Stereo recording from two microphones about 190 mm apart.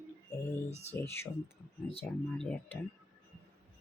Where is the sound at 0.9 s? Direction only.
15° left (ahead or behind).